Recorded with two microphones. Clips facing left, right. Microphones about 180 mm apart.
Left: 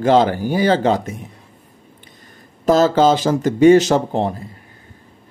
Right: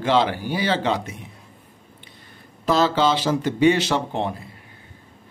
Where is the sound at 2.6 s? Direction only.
45° left (ahead or behind).